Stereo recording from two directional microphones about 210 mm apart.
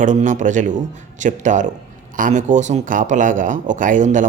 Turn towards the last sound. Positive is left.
turn(degrees=-35)  # may be behind; listen again after turning